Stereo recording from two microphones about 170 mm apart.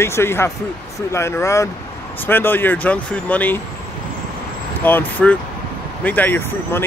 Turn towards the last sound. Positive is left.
turn(degrees=15)  # may be behind; listen again after turning